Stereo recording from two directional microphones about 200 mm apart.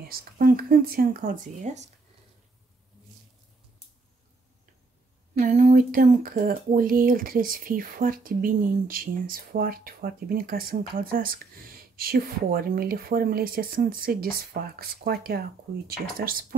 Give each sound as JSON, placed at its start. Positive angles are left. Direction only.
{"t": 0.0, "sound": "speech", "side_deg": -45}
{"t": 5.4, "sound": "speech", "side_deg": -40}